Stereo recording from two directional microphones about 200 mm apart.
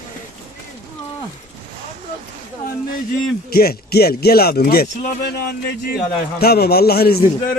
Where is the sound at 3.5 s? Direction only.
50° left (ahead or behind).